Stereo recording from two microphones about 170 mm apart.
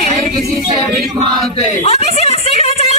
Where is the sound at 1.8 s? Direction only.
40° left (ahead or behind).